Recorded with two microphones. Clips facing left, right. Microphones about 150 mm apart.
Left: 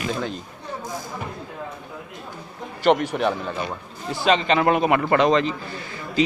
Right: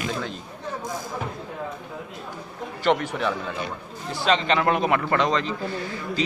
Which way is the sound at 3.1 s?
60° left (ahead or behind).